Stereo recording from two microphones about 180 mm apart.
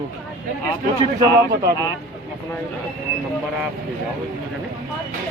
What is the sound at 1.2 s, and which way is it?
Speech, 20° right (ahead or behind).